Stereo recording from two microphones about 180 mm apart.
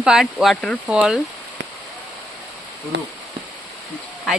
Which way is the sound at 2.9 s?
75° right (ahead or behind).